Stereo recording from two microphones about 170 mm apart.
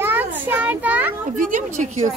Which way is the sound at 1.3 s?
50° right (ahead or behind).